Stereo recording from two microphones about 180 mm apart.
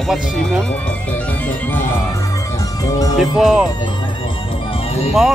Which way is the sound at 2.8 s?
20° left (ahead or behind).